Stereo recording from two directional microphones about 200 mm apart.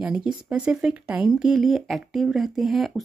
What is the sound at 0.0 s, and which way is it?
Speech, 5° right (ahead or behind).